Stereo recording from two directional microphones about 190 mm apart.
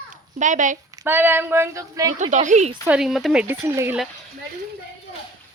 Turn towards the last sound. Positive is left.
turn(degrees=-15)  # may be behind; listen again after turning